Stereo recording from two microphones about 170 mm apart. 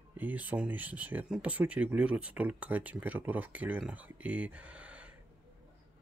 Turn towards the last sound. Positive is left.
turn(degrees=-10)  # may be behind; listen again after turning